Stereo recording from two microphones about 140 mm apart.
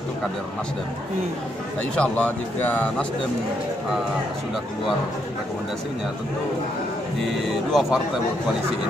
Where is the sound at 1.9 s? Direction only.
10° left (ahead or behind).